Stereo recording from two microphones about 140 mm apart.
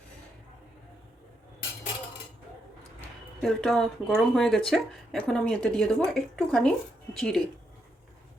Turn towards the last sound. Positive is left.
turn(degrees=5)  # may be behind; listen again after turning